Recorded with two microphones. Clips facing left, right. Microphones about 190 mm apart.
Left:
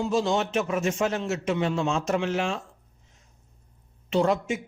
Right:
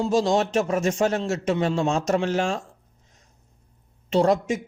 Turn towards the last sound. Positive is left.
turn(degrees=-40)  # may be behind; listen again after turning